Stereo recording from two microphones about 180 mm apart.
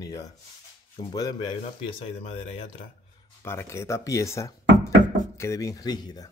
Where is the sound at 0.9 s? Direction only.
20° left (ahead or behind).